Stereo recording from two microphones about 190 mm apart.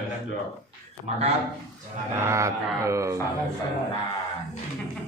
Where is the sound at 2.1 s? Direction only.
15° right (ahead or behind).